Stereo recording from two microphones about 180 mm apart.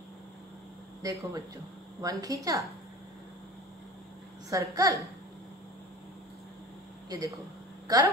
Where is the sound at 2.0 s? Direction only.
20° right (ahead or behind).